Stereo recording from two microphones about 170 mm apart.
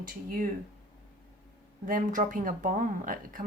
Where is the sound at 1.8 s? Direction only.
55° right (ahead or behind).